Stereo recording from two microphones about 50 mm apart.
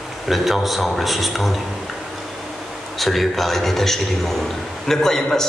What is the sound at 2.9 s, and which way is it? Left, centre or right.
A man's voice, centre.